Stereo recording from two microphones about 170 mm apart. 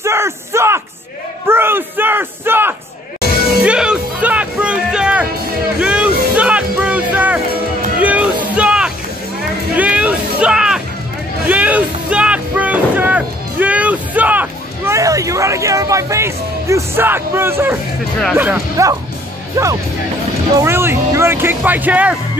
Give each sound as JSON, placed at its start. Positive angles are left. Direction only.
{"t": 0.0, "sound": "a sound", "side_deg": -15}
{"t": 1.5, "sound": "bellow", "side_deg": -15}
{"t": 3.6, "sound": "music", "side_deg": -5}
{"t": 8.0, "sound": "a sound", "side_deg": -10}
{"t": 18.3, "sound": "speech", "side_deg": -10}
{"t": 19.5, "sound": "music", "side_deg": -20}
{"t": 20.6, "sound": "speech", "side_deg": -15}